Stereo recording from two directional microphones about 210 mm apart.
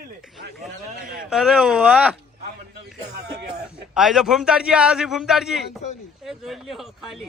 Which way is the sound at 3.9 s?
5° right (ahead or behind).